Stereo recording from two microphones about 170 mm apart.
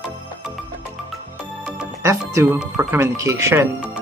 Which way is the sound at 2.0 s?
15° right (ahead or behind).